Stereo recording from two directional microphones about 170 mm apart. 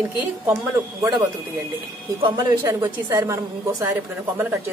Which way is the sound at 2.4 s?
20° right (ahead or behind).